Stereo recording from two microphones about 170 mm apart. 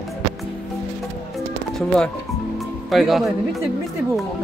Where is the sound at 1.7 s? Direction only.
5° left (ahead or behind).